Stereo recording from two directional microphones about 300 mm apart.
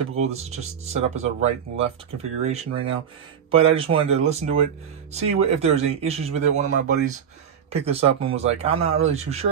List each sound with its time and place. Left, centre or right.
0.1 s speech: right
7.7 s speech: centre